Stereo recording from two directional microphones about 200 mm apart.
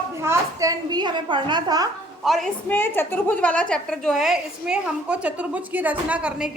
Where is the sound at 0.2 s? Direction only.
15° right (ahead or behind).